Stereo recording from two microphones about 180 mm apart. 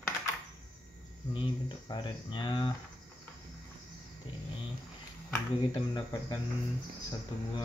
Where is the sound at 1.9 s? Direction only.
25° left (ahead or behind).